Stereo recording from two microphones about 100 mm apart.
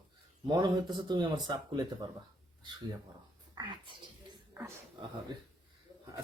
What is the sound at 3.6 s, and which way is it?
Speech, 45° right (ahead or behind).